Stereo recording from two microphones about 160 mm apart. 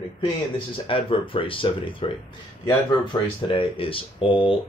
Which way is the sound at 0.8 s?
35° left (ahead or behind).